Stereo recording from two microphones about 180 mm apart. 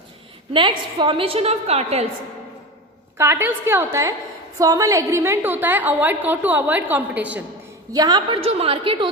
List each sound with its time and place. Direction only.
0.5 s a woman's voice: 25° right (ahead or behind)
3.2 s a woman's voice: 15° right (ahead or behind)
7.9 s a woman's voice: 20° right (ahead or behind)
8.4 s a woman's voice: 35° right (ahead or behind)